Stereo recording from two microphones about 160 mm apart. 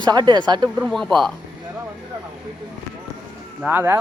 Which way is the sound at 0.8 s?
Centre (ahead or behind).